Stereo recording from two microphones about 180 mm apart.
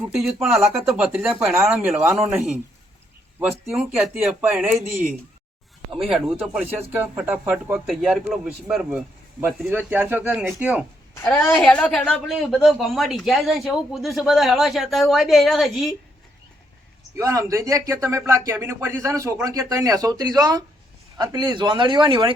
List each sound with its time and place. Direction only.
0.1 s a woman's voice: 5° right (ahead or behind)
6.1 s a woman's voice: 5° right (ahead or behind)
11.1 s a woman's voice: 10° left (ahead or behind)
17.2 s speech: 15° right (ahead or behind)